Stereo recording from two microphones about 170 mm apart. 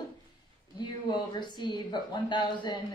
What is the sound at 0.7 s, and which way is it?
A woman's voice, 25° left (ahead or behind).